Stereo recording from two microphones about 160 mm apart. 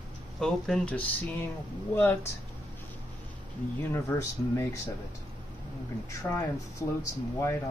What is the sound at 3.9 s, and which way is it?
Speech, 15° left (ahead or behind).